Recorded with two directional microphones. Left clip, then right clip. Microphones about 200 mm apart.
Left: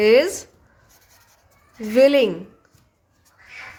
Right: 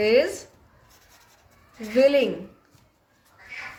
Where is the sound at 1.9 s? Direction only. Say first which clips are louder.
Left 4 dB; 40° left (ahead or behind).